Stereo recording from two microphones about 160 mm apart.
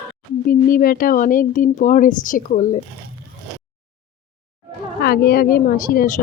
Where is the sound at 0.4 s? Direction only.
65° left (ahead or behind).